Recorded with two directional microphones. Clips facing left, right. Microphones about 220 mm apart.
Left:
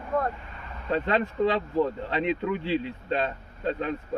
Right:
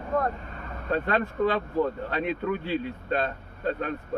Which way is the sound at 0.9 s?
20° left (ahead or behind).